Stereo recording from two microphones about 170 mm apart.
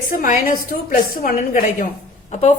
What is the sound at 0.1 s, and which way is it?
Speech, 55° left (ahead or behind).